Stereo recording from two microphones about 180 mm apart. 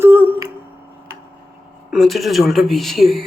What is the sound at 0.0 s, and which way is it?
Humming, 10° right (ahead or behind).